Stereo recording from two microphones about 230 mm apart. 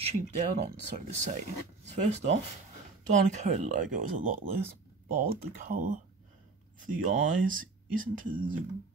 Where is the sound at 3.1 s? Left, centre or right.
Right.